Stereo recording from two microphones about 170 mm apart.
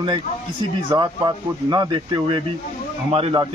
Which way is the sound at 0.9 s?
25° right (ahead or behind).